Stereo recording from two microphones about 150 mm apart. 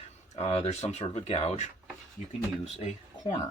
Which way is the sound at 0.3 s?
40° left (ahead or behind).